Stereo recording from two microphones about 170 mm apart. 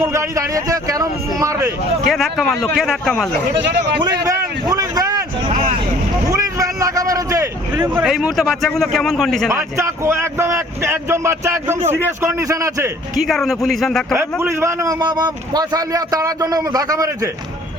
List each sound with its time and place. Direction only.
0.0 s a man's voice: 15° right (ahead or behind)
2.0 s speech: centre (ahead or behind)
3.5 s speech: 90° right
4.0 s a man's voice: 20° right (ahead or behind)
6.3 s a sound: 20° right (ahead or behind); by 9.5 s centre (ahead or behind)
9.5 s a man's voice: 15° right (ahead or behind)
13.1 s speech: centre (ahead or behind)
14.1 s a man's voice: 15° right (ahead or behind)